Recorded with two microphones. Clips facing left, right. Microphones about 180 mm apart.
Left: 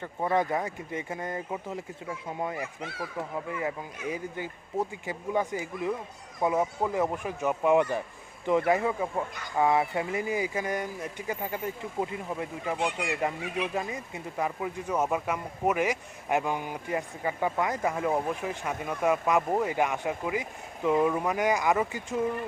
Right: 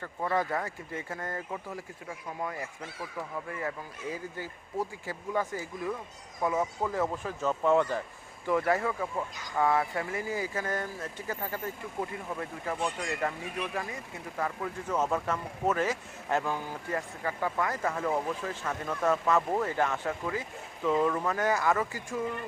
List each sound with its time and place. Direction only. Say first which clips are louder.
0.0 s speech: left 3 dB; 20° left (ahead or behind)
4.1 s speech: left 4 dB; 20° left (ahead or behind)